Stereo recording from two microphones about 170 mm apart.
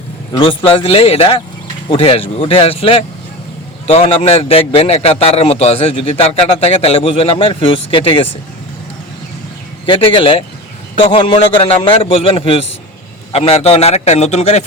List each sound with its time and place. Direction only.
0.3 s a man's voice: 30° left (ahead or behind)
9.8 s a man's voice: 30° left (ahead or behind)